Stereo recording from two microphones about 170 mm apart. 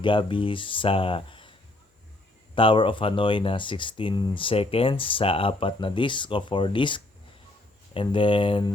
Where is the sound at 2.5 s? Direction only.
30° left (ahead or behind).